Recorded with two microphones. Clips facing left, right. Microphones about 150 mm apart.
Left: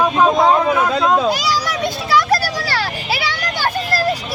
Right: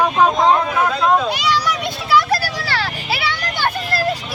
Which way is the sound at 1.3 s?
40° left (ahead or behind).